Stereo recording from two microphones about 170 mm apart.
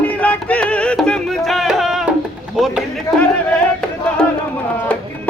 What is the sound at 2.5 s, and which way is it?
Run, centre (ahead or behind).